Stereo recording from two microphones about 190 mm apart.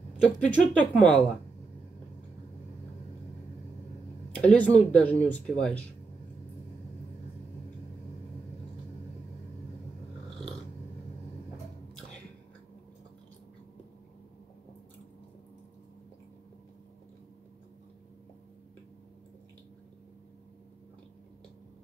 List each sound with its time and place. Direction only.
0.2 s speech: 10° left (ahead or behind)
4.3 s speech: 5° left (ahead or behind)